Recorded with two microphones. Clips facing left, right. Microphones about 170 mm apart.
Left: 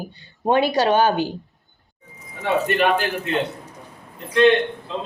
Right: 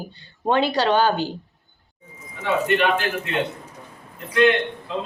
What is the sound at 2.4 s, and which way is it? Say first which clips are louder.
Speech: left 1 dB; 40° left (ahead or behind).